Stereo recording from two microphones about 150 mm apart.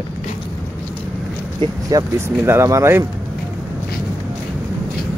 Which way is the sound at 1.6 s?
35° right (ahead or behind).